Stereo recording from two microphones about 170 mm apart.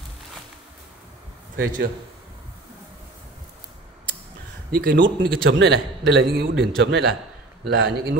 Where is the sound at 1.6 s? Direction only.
60° right (ahead or behind).